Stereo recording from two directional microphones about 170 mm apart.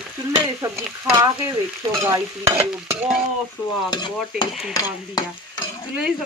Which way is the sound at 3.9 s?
25° left (ahead or behind).